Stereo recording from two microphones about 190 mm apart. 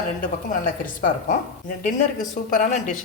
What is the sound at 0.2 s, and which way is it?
A woman's voice, 45° left (ahead or behind).